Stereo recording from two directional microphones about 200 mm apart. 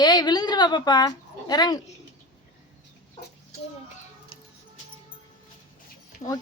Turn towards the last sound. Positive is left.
turn(degrees=30)  # may be behind; listen again after turning